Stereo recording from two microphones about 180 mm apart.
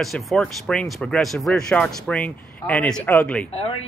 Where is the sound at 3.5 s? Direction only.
35° left (ahead or behind).